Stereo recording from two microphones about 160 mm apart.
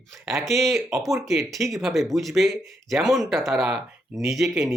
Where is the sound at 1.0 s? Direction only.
20° right (ahead or behind).